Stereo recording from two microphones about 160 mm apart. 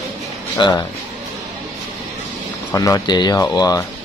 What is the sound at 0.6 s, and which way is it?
Speech, 25° left (ahead or behind).